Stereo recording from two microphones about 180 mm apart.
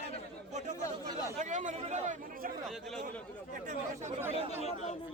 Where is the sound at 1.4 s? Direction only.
45° right (ahead or behind).